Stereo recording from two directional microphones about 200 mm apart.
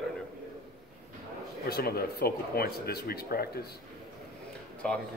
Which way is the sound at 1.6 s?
50° left (ahead or behind).